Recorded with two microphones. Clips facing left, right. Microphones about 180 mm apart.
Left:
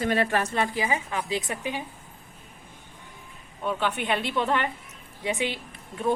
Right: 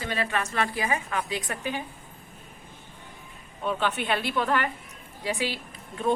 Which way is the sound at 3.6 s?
10° left (ahead or behind).